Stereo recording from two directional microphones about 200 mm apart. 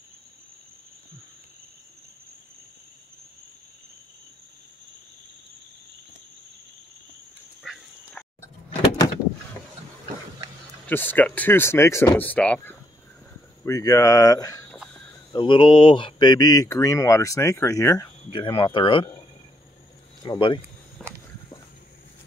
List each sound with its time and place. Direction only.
7.6 s dog: centre (ahead or behind)
10.9 s speech: 10° left (ahead or behind)
13.7 s speech: 15° left (ahead or behind)
14.8 s a sound: 5° left (ahead or behind)
15.3 s speech: 25° left (ahead or behind)
20.2 s speech: 25° left (ahead or behind)
21.0 s a sound: centre (ahead or behind)